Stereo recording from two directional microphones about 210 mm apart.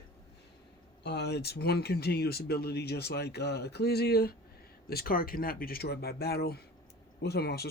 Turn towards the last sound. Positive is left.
turn(degrees=50)  # may be behind; listen again after turning